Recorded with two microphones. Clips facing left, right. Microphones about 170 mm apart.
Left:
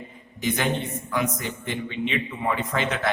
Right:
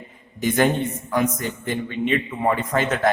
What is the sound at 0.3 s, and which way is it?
A man's voice, 45° right (ahead or behind).